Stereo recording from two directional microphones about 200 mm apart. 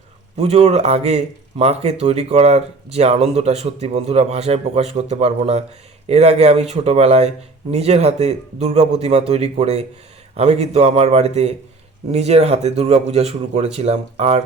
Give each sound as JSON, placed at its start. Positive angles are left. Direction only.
{"t": 0.3, "sound": "speech", "side_deg": -30}